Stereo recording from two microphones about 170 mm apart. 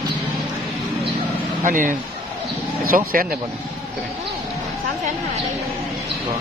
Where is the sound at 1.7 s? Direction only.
50° right (ahead or behind).